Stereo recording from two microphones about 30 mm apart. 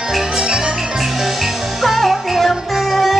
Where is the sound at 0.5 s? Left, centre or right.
Right.